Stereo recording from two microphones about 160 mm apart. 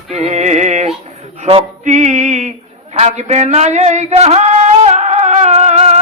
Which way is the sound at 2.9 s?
45° right (ahead or behind).